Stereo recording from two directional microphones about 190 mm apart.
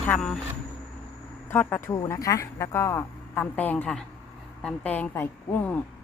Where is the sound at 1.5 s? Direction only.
10° left (ahead or behind).